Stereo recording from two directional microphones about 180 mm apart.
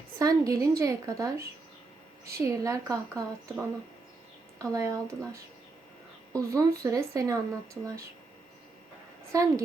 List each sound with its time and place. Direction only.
0.2 s a woman's voice: 20° right (ahead or behind)
4.7 s speech: 20° right (ahead or behind)
9.3 s a woman's voice: 20° right (ahead or behind)